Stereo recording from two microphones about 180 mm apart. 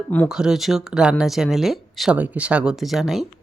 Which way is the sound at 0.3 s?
5° right (ahead or behind).